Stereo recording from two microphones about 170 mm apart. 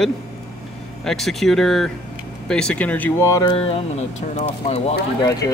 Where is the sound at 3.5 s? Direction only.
35° left (ahead or behind).